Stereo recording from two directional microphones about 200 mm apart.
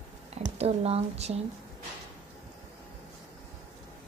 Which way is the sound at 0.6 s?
30° right (ahead or behind).